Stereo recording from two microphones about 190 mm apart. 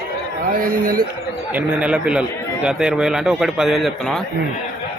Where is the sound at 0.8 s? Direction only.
50° right (ahead or behind).